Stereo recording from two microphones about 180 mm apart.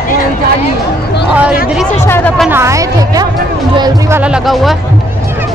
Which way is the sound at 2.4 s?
15° right (ahead or behind).